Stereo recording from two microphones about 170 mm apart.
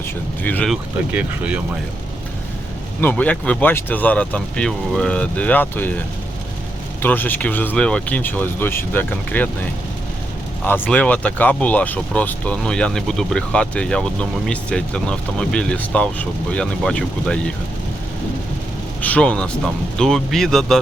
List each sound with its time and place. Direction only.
0.4 s speech: 10° left (ahead or behind)
0.7 s speech: 10° right (ahead or behind)
3.0 s speech: 10° left (ahead or behind)
7.0 s speech: 10° left (ahead or behind)
10.6 s speech: 10° left (ahead or behind)
19.0 s speech: 5° left (ahead or behind)